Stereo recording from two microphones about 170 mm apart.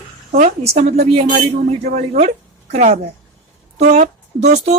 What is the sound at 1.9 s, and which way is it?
A woman's voice, 45° right (ahead or behind).